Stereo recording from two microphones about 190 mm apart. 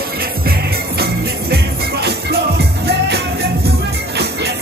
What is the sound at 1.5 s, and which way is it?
Music, 55° right (ahead or behind).